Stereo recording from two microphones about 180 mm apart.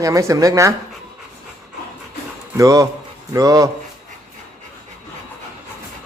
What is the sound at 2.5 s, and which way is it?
Speech, 20° right (ahead or behind).